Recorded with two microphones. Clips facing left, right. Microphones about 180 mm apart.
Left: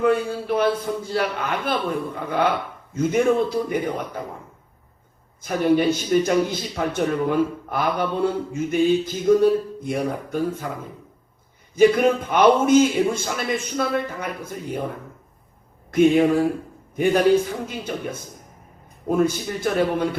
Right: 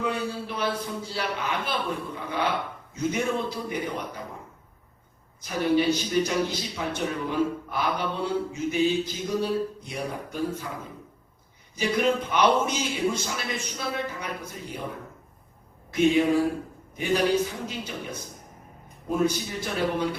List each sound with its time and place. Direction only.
0.0 s a man's voice: 50° left (ahead or behind)
5.4 s a man's voice: 50° left (ahead or behind)
11.7 s a man's voice: 50° left (ahead or behind)
15.9 s a man's voice: 50° left (ahead or behind)